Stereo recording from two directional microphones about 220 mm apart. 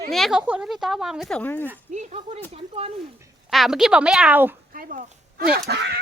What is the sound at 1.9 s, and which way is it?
Speech, 30° right (ahead or behind).